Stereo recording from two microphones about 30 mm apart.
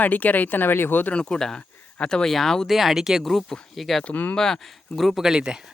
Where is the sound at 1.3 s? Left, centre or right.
Left.